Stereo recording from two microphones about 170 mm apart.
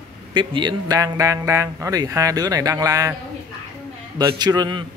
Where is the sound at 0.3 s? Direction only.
30° right (ahead or behind).